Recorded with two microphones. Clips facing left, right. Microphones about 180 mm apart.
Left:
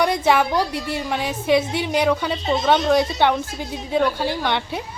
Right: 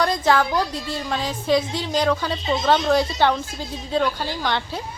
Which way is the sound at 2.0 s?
5° left (ahead or behind).